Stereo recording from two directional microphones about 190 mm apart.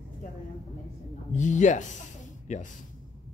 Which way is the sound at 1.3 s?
40° left (ahead or behind).